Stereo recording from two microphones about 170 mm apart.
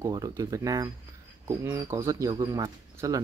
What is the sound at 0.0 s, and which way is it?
Speech, 20° right (ahead or behind).